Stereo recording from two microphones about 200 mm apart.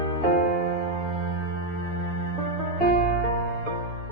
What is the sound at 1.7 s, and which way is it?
Music, 90° left.